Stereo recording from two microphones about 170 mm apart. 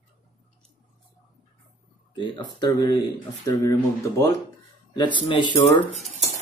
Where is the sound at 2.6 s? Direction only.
20° left (ahead or behind).